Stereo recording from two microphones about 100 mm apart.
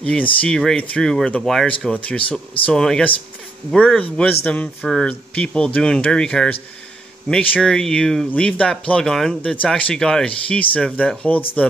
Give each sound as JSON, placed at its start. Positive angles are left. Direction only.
{"t": 0.0, "sound": "speech", "side_deg": 10}